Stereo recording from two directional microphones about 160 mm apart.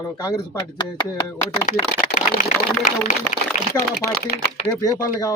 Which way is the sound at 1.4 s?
50° left (ahead or behind).